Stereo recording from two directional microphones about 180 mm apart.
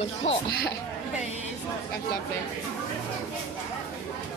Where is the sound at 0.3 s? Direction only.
35° left (ahead or behind).